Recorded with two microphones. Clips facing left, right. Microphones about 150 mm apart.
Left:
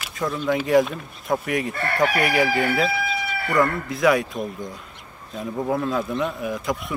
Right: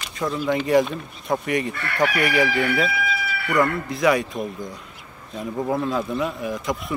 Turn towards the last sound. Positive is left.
turn(degrees=0)  # may be behind; listen again after turning